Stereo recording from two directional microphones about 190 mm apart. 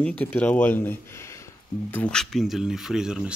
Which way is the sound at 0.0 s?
5° left (ahead or behind).